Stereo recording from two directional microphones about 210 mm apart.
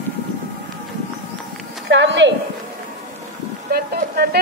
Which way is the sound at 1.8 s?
60° right (ahead or behind).